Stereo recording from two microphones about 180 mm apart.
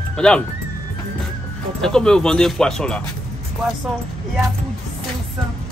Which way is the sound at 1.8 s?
5° left (ahead or behind).